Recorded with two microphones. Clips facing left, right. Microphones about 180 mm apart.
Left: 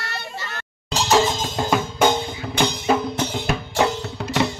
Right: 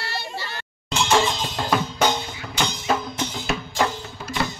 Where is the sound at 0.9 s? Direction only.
40° left (ahead or behind); by 3.8 s 60° left (ahead or behind).